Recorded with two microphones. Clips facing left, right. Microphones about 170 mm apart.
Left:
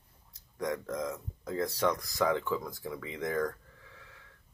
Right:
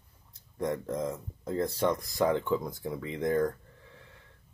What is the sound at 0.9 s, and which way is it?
Speech, 30° right (ahead or behind).